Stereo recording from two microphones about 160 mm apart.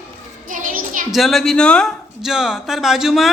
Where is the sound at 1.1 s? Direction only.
Centre (ahead or behind).